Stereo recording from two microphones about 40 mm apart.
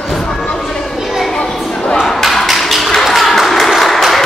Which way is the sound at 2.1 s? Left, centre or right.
Centre.